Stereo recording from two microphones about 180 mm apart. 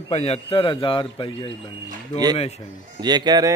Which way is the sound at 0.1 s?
35° left (ahead or behind).